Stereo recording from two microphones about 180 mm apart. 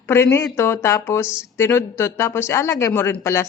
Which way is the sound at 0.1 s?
15° left (ahead or behind).